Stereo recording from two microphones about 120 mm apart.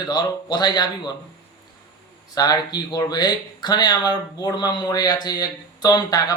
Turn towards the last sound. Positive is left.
turn(degrees=30)  # may be behind; listen again after turning